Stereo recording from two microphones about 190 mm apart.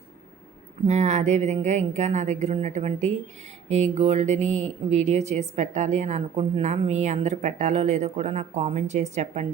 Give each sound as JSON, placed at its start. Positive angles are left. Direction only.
{"t": 0.9, "sound": "speech", "side_deg": -35}